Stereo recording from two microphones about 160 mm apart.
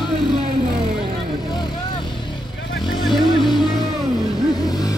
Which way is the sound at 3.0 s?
30° left (ahead or behind).